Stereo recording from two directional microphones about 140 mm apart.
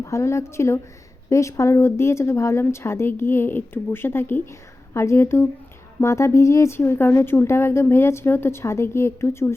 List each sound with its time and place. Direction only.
0.0 s a woman's voice: 20° left (ahead or behind)